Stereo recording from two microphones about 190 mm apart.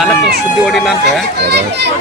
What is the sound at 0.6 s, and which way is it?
Speech, centre (ahead or behind).